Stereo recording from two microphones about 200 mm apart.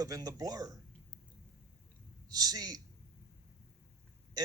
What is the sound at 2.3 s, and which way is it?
Speech, 20° right (ahead or behind).